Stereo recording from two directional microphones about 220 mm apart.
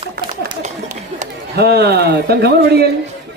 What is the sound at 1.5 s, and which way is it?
A woman's voice, 45° right (ahead or behind).